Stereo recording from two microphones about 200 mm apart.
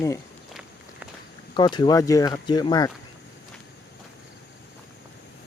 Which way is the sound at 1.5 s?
20° left (ahead or behind).